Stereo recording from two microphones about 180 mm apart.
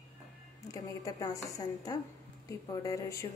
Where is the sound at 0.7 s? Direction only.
20° left (ahead or behind).